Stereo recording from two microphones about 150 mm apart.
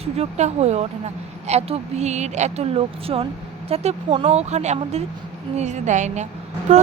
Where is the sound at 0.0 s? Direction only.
45° right (ahead or behind).